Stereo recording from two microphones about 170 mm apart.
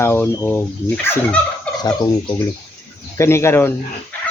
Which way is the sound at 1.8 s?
25° left (ahead or behind).